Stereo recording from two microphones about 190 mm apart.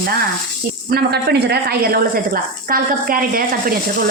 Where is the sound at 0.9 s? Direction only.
60° right (ahead or behind).